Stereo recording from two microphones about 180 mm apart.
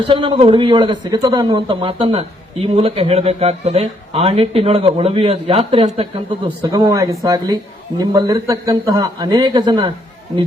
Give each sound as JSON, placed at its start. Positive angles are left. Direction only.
{"t": 0.0, "sound": "speech", "side_deg": -30}
{"t": 6.6, "sound": "a man's voice", "side_deg": -20}